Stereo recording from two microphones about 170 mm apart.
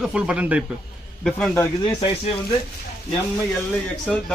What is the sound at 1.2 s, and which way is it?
Speech, 5° left (ahead or behind).